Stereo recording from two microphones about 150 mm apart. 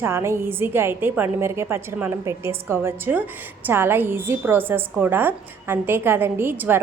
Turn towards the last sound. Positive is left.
turn(degrees=-15)  # may be behind; listen again after turning